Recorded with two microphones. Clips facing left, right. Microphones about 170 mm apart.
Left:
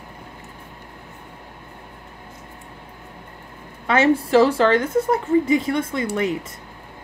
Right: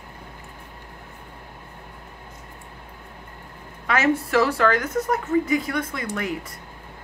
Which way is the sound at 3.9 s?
30° left (ahead or behind).